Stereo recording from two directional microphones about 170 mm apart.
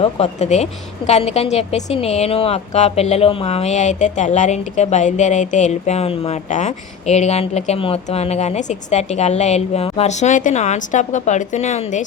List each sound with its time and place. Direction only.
0.0 s a woman's voice: 40° left (ahead or behind)